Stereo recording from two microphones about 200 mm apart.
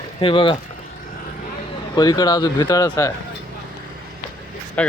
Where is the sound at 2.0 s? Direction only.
20° left (ahead or behind).